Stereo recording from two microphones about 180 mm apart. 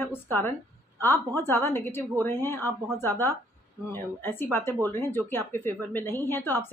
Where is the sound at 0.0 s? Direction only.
10° left (ahead or behind).